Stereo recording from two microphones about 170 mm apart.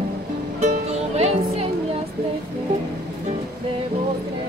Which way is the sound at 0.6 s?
40° right (ahead or behind).